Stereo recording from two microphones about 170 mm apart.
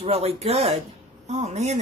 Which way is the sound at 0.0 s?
35° right (ahead or behind).